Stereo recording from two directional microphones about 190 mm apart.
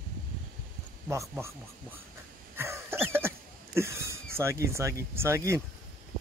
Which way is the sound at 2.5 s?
15° right (ahead or behind).